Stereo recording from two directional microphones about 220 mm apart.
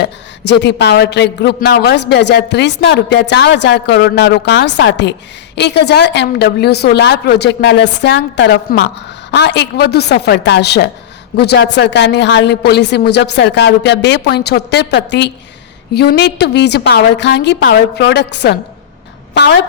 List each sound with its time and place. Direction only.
0.0 s a man's voice: 50° left (ahead or behind)